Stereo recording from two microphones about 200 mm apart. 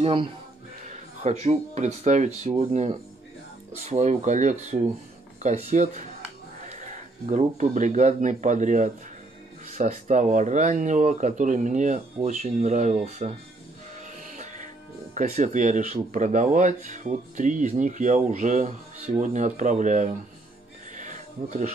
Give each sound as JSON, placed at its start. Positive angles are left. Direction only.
{"t": 0.0, "sound": "speech", "side_deg": -25}
{"t": 7.2, "sound": "speech", "side_deg": -35}
{"t": 14.2, "sound": "music", "side_deg": -40}
{"t": 15.1, "sound": "speech", "side_deg": -40}
{"t": 20.9, "sound": "a sound", "side_deg": -40}